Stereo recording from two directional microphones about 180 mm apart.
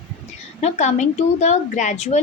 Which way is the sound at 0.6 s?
40° left (ahead or behind).